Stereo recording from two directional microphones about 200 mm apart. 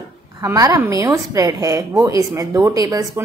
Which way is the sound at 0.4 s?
15° right (ahead or behind).